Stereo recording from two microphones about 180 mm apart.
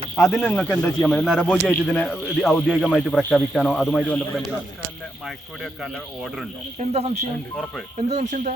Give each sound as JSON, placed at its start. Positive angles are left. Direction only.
{"t": 0.2, "sound": "a man's voice", "side_deg": 5}
{"t": 6.7, "sound": "speech", "side_deg": -35}